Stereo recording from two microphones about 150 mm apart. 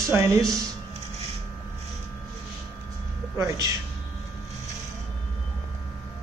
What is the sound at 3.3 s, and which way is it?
Speech, 20° right (ahead or behind).